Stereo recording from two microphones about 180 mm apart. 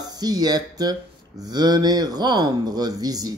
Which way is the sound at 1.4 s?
20° right (ahead or behind).